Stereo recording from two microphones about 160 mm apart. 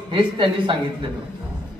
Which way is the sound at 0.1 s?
30° right (ahead or behind).